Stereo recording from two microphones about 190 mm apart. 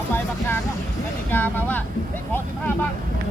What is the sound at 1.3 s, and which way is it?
Speech, 10° left (ahead or behind).